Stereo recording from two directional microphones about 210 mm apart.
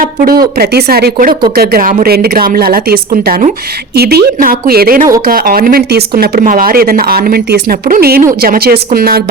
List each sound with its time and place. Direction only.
0.3 s a woman's voice: 45° right (ahead or behind)